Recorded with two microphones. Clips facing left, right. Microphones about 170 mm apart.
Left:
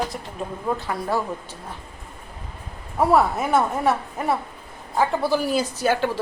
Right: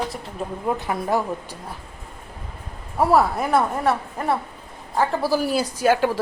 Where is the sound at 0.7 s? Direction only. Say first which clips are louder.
Right 2 dB; 15° right (ahead or behind).